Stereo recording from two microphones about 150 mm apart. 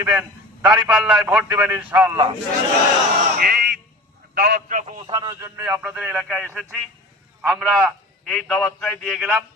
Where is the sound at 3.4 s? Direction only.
90° right.